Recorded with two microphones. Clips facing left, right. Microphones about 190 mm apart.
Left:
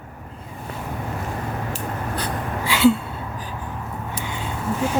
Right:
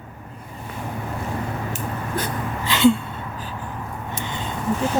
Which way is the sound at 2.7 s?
5° left (ahead or behind).